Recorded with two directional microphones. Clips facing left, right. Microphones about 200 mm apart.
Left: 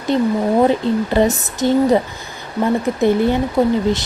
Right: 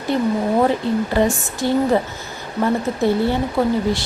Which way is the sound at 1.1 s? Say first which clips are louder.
Left 2 dB; 20° left (ahead or behind).